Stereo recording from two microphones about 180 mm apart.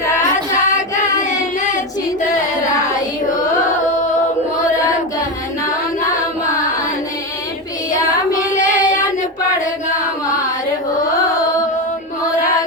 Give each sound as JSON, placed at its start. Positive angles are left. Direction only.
{"t": 0.0, "sound": "child singing", "side_deg": 15}
{"t": 1.2, "sound": "child singing", "side_deg": 45}
{"t": 8.6, "sound": "child singing", "side_deg": 20}